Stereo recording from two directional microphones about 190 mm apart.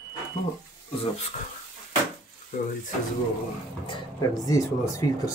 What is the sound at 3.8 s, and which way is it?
Speech, 20° left (ahead or behind).